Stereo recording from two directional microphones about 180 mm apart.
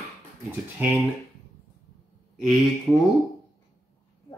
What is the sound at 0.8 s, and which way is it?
Speech, 10° right (ahead or behind).